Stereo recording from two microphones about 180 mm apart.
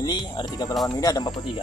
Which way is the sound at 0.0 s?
25° left (ahead or behind).